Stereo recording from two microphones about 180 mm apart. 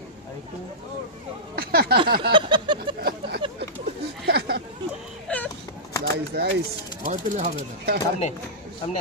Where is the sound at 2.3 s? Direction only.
25° right (ahead or behind).